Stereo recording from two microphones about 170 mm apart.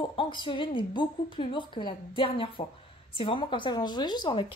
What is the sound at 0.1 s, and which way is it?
A woman's voice, 30° left (ahead or behind).